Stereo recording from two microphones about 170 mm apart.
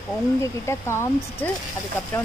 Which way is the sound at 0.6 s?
15° left (ahead or behind).